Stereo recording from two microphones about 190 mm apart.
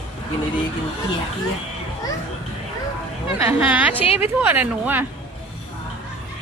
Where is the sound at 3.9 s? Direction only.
30° left (ahead or behind).